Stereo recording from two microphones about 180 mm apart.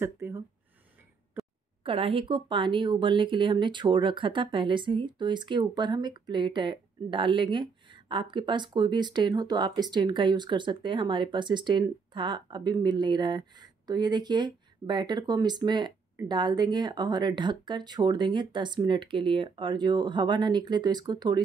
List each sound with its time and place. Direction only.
0.0 s speech: 15° right (ahead or behind)
1.9 s speech: 30° right (ahead or behind)